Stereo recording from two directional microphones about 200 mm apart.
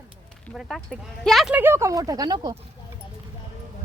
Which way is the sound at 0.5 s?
Centre (ahead or behind).